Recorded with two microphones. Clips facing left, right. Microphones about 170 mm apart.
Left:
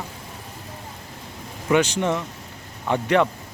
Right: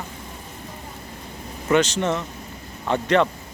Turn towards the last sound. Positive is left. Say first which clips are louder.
# even
turn(degrees=10)  # may be behind; listen again after turning